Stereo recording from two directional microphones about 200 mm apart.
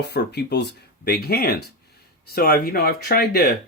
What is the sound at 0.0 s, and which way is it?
Speech, 55° left (ahead or behind).